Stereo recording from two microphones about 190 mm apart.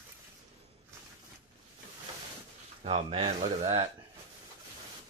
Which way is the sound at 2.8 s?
30° right (ahead or behind).